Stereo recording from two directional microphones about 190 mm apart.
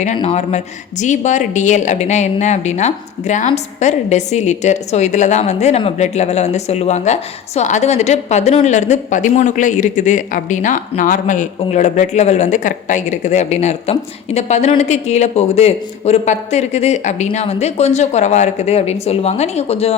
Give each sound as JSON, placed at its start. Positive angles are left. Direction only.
{"t": 0.2, "sound": "a woman's voice", "side_deg": 35}